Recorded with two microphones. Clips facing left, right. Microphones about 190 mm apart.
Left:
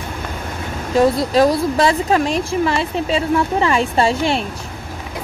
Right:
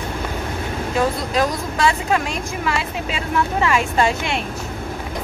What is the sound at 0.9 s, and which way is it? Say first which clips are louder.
A woman's voice: left 7 dB; 35° left (ahead or behind).